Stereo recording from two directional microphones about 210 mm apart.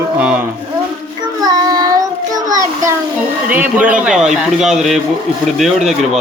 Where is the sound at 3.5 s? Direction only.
5° right (ahead or behind).